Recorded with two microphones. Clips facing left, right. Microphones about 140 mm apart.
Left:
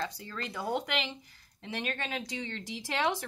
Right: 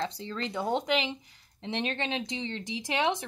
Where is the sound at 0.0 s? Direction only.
25° right (ahead or behind).